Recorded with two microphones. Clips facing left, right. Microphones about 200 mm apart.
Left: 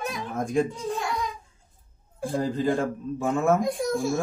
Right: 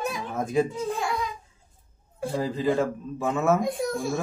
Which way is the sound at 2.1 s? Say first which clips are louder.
Left 1 dB; centre (ahead or behind).